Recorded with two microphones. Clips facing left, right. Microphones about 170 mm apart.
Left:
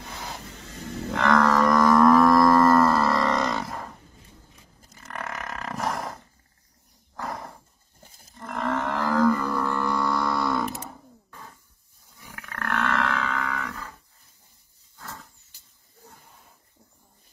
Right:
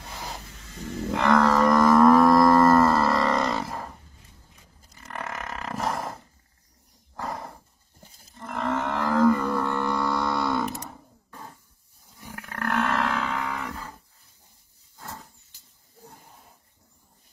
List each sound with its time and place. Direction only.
0.5 s a sound: 70° left (ahead or behind)
1.1 s a sound: centre (ahead or behind)
1.8 s livestock: centre (ahead or behind)
5.0 s burping: 5° right (ahead or behind)
5.8 s roar: centre (ahead or behind)
7.2 s wild animals: centre (ahead or behind)
8.4 s whale vocalization: centre (ahead or behind)
12.3 s roar: 35° right (ahead or behind)
13.6 s cattle: 35° right (ahead or behind)
15.0 s a sound: 20° right (ahead or behind)